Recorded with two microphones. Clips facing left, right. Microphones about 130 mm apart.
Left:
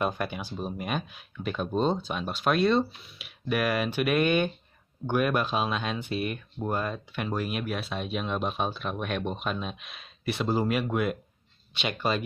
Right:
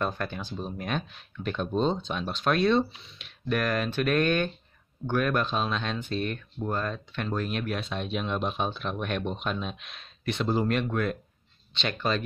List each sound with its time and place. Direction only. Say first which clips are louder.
0.0 s speech: left 1 dB; 10° left (ahead or behind)